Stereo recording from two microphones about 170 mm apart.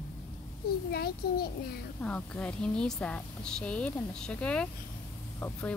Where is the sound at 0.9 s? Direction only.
65° left (ahead or behind).